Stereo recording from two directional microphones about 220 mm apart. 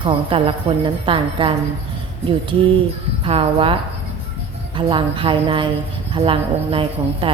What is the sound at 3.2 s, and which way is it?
A woman's voice, 25° right (ahead or behind).